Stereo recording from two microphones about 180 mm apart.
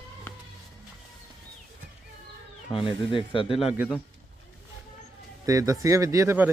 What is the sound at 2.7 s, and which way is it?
Speech, 30° left (ahead or behind).